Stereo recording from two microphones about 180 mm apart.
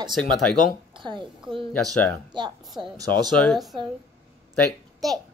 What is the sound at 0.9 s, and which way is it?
Speech, 25° right (ahead or behind).